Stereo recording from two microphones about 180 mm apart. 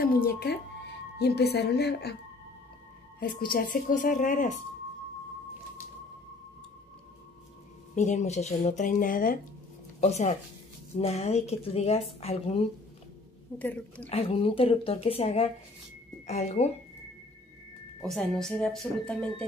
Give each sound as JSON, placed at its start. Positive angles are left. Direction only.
{"t": 0.0, "sound": "a woman's voice", "side_deg": 60}
{"t": 3.2, "sound": "speech", "side_deg": 55}
{"t": 7.9, "sound": "speech", "side_deg": 40}
{"t": 9.9, "sound": "speech", "side_deg": 40}
{"t": 13.6, "sound": "a woman's voice", "side_deg": 10}
{"t": 14.0, "sound": "speech", "side_deg": 30}
{"t": 18.0, "sound": "a woman's voice", "side_deg": 0}